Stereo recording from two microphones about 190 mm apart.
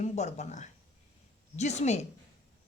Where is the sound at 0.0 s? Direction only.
35° left (ahead or behind).